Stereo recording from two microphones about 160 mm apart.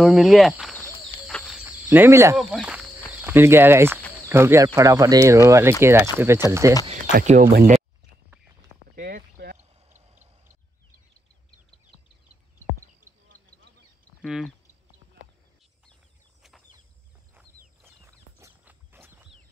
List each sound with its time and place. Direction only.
0.0 s speech: centre (ahead or behind)
1.2 s a sound: centre (ahead or behind)
1.9 s speech: 15° right (ahead or behind)
2.3 s speech: 5° right (ahead or behind)
3.1 s speech: 15° right (ahead or behind)
7.2 s speech: 50° right (ahead or behind)
8.9 s a sound: 75° right (ahead or behind)
14.2 s speech: centre (ahead or behind)
17.8 s a sound: 15° right (ahead or behind)